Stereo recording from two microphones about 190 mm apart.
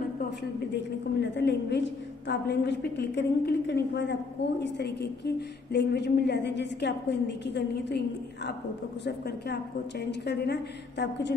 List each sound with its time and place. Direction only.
1.2 s a woman's voice: 65° left (ahead or behind)
9.0 s a woman's voice: 60° left (ahead or behind)